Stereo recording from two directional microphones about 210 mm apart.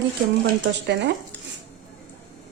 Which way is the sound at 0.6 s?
55° right (ahead or behind).